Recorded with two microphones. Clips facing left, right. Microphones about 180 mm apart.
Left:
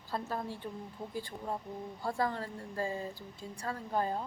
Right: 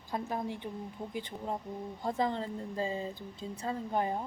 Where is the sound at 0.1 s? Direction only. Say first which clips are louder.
Right 2 dB; 15° right (ahead or behind).